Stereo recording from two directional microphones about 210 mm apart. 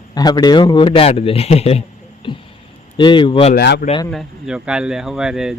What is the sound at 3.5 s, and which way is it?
Speech, 50° left (ahead or behind).